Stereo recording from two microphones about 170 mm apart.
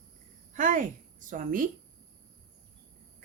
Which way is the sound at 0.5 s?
50° right (ahead or behind).